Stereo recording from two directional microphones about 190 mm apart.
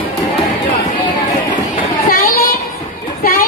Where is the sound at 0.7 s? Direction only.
25° left (ahead or behind).